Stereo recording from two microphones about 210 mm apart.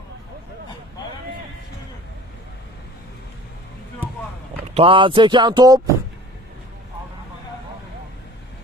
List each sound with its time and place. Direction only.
4.7 s speech: 25° right (ahead or behind)